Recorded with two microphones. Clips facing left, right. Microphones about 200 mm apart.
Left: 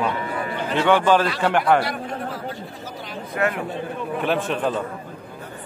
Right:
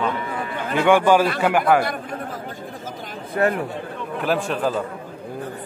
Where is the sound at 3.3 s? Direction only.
35° right (ahead or behind).